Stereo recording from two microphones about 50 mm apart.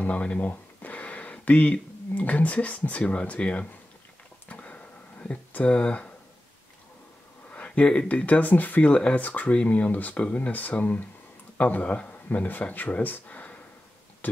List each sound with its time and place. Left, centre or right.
0.0 s speech: left
4.5 s a sound: left
7.5 s a sound: left
8.1 s speech: left
8.9 s speech: left
9.2 s speech: left